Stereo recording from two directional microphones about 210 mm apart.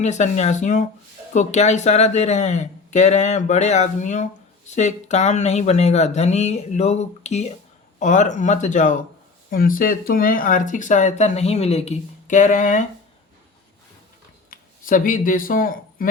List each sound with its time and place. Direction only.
0.0 s speech: 35° left (ahead or behind)
14.5 s speech: 40° left (ahead or behind)